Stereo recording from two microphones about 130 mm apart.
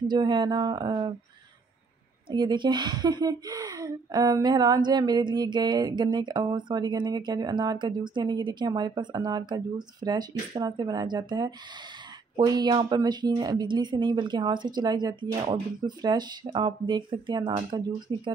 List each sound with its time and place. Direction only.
0.0 s a woman's voice: 35° right (ahead or behind)
2.2 s a woman's voice: 40° right (ahead or behind)